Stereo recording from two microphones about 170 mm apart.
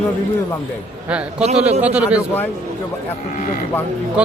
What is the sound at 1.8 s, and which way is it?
Speech, 10° right (ahead or behind).